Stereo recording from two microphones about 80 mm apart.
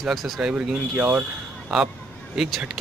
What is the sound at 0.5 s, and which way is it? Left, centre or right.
Speech, right.